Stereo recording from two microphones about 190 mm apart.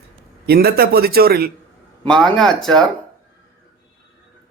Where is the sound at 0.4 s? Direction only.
55° right (ahead or behind).